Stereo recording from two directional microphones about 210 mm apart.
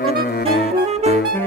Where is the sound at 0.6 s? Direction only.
30° right (ahead or behind).